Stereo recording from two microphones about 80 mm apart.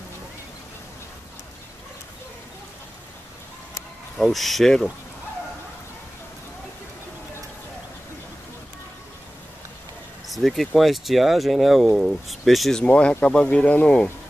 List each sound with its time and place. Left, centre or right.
4.2 s speech: centre
10.2 s speech: centre
12.8 s speech: centre